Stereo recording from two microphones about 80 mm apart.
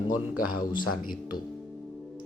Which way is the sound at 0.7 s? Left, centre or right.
Left.